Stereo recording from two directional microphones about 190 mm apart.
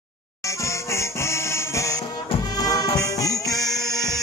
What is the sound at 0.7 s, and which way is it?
Music, 15° left (ahead or behind).